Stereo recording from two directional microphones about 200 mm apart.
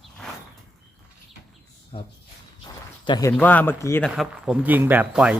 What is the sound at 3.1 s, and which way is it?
Speech, 20° left (ahead or behind).